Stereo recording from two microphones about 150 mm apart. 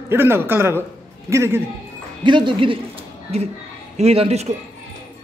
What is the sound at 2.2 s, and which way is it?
Speech, 30° right (ahead or behind).